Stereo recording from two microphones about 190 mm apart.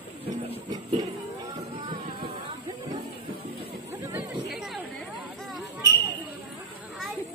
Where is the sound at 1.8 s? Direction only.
25° right (ahead or behind).